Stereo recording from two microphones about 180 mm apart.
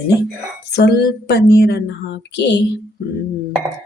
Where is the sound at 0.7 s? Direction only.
65° left (ahead or behind).